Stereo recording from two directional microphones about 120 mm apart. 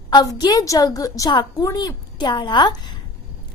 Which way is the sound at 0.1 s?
35° left (ahead or behind).